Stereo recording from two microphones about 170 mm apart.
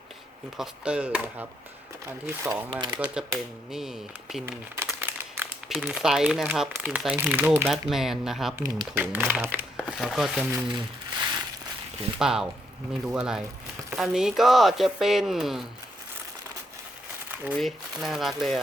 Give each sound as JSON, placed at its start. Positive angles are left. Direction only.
{"t": 0.5, "sound": "speech", "side_deg": -5}
{"t": 3.2, "sound": "speech", "side_deg": -5}
{"t": 4.7, "sound": "crumpling", "side_deg": -15}
{"t": 5.6, "sound": "speech", "side_deg": -5}
{"t": 7.7, "sound": "speech", "side_deg": 0}
{"t": 8.5, "sound": "speech", "side_deg": -15}
{"t": 12.2, "sound": "speech", "side_deg": -5}
{"t": 17.2, "sound": "crumpling", "side_deg": -10}
{"t": 17.6, "sound": "speech", "side_deg": 0}